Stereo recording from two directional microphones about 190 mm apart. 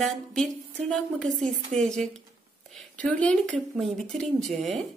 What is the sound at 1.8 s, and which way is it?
Speech, centre (ahead or behind).